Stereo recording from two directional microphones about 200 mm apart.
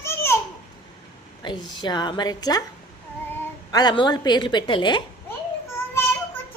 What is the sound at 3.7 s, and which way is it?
A woman's voice, 20° left (ahead or behind).